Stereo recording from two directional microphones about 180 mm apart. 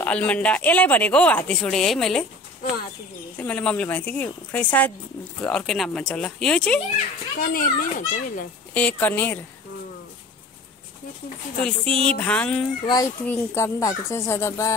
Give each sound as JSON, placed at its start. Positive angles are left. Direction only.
{"t": 0.0, "sound": "speech", "side_deg": 10}
{"t": 7.4, "sound": "a child's voice", "side_deg": 50}
{"t": 8.7, "sound": "speech", "side_deg": 10}
{"t": 11.6, "sound": "speech", "side_deg": 5}
{"t": 12.8, "sound": "a child's voice", "side_deg": 20}